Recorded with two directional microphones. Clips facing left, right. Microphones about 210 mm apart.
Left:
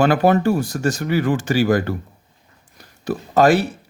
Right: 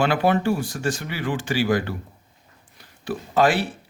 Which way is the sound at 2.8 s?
40° left (ahead or behind).